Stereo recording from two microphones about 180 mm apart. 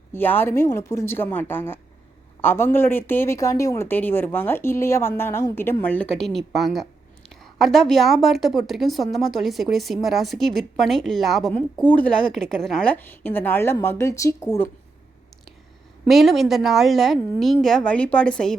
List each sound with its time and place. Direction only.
0.1 s speech: 10° left (ahead or behind)
16.0 s a woman's voice: centre (ahead or behind)